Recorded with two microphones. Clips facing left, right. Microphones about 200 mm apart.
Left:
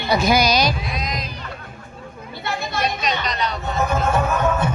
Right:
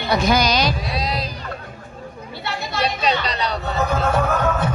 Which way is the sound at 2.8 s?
35° right (ahead or behind).